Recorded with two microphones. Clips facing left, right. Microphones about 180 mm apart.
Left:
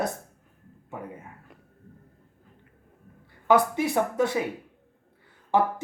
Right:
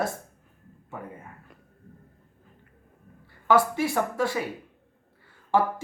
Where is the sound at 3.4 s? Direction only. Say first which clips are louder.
Left 1 dB; 20° left (ahead or behind).